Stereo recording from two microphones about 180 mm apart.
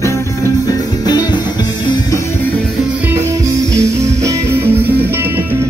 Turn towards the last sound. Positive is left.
turn(degrees=-10)  # may be behind; listen again after turning